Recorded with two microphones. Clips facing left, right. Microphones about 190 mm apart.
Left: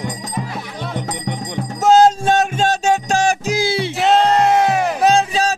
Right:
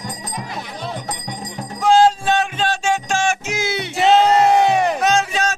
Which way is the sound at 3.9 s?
Centre (ahead or behind).